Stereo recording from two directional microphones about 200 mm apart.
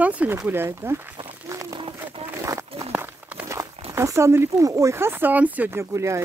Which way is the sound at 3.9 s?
15° right (ahead or behind).